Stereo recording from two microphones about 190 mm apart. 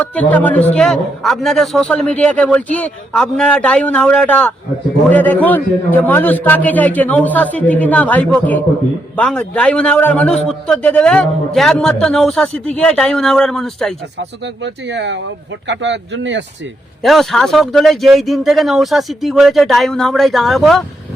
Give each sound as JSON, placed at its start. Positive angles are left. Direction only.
{"t": 0.0, "sound": "a man's voice", "side_deg": 5}
{"t": 14.2, "sound": "speech", "side_deg": -65}
{"t": 17.0, "sound": "a man's voice", "side_deg": 0}